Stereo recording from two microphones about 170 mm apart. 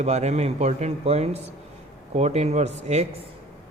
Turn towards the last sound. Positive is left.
turn(degrees=-40)  # may be behind; listen again after turning